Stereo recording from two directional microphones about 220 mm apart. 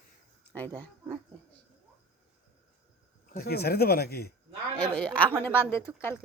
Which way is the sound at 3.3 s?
45° left (ahead or behind).